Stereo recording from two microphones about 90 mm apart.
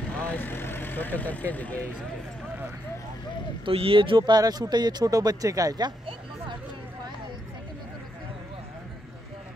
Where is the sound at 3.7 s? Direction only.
90° right; by 5.9 s 45° right (ahead or behind).